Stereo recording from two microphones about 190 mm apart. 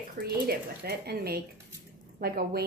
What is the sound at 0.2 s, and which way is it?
Speech, 55° right (ahead or behind).